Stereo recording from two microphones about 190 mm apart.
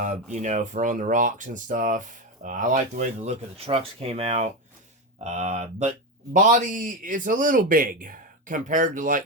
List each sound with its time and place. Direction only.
0.0 s speech: 40° right (ahead or behind)
3.7 s speech: 30° right (ahead or behind)